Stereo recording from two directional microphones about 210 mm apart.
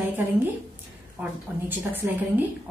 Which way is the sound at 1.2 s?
5° right (ahead or behind).